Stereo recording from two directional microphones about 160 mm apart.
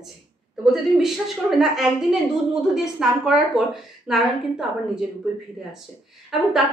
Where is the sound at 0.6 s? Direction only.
Centre (ahead or behind).